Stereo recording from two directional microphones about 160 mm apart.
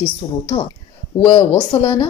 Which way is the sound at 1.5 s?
20° left (ahead or behind).